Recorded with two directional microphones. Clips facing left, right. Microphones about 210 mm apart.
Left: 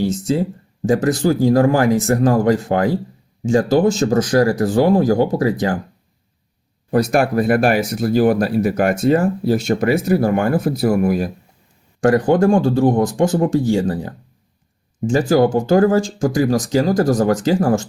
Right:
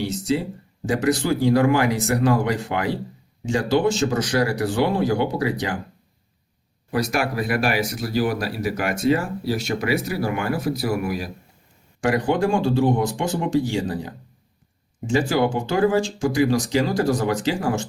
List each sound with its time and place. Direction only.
0.0 s speech: 45° left (ahead or behind)
6.9 s speech: 50° left (ahead or behind)
15.1 s speech: 45° left (ahead or behind)